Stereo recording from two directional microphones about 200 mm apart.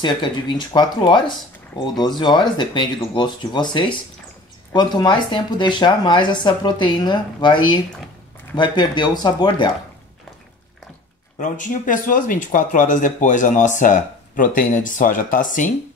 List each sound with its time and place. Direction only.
0.0 s speech: 25° left (ahead or behind)
11.3 s speech: 40° left (ahead or behind)